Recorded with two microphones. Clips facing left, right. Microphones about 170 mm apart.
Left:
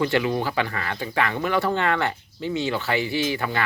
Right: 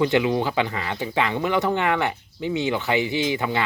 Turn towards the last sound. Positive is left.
turn(degrees=-20)  # may be behind; listen again after turning